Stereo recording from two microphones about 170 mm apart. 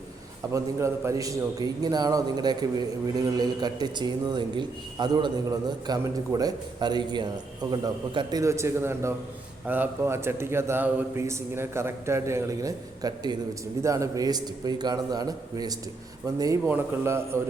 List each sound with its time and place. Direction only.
0.5 s a man's voice: 15° right (ahead or behind)